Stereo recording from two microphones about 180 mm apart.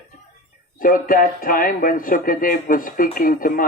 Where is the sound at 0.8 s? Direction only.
50° left (ahead or behind).